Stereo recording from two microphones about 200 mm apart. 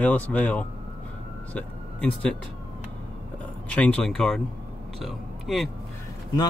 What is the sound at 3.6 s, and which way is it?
Speech, 5° left (ahead or behind).